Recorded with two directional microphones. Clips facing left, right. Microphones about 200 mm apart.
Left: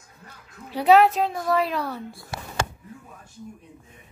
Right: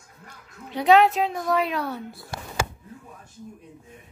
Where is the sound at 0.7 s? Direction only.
5° left (ahead or behind).